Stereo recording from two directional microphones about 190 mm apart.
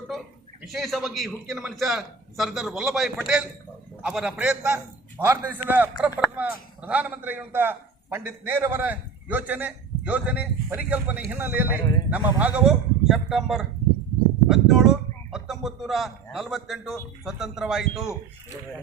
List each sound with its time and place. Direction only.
0.6 s a man's voice: centre (ahead or behind)